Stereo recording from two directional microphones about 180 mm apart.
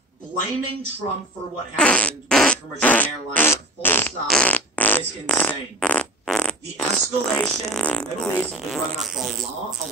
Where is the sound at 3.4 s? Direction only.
10° left (ahead or behind).